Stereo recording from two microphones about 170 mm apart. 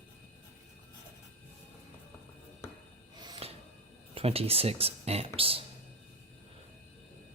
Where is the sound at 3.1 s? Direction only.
30° right (ahead or behind).